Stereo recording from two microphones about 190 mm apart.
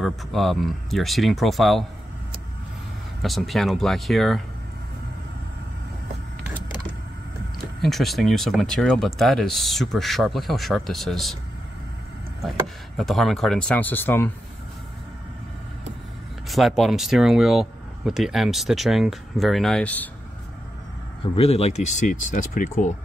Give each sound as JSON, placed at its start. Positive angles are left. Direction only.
{"t": 0.0, "sound": "speech", "side_deg": 0}
{"t": 3.2, "sound": "speech", "side_deg": 0}
{"t": 7.5, "sound": "speech", "side_deg": 0}
{"t": 12.4, "sound": "speech", "side_deg": 0}
{"t": 16.4, "sound": "speech", "side_deg": 0}
{"t": 21.4, "sound": "speech", "side_deg": 35}